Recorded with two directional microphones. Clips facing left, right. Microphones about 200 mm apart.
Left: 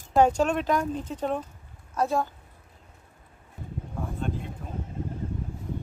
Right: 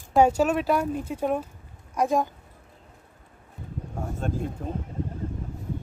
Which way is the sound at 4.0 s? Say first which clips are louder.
Right 2 dB; 45° right (ahead or behind).